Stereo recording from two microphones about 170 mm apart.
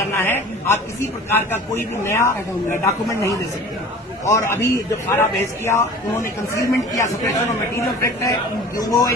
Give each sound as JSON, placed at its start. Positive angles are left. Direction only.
{"t": 0.2, "sound": "a man's voice", "side_deg": 15}